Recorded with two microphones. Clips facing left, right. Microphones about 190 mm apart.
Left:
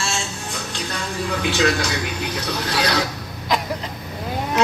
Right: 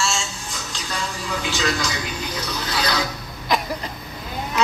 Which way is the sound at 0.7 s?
60° left (ahead or behind).